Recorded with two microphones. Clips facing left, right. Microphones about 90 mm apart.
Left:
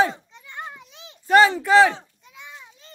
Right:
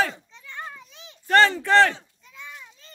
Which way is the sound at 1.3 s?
10° left (ahead or behind).